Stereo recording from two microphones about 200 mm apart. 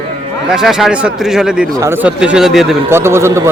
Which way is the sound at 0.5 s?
Centre (ahead or behind).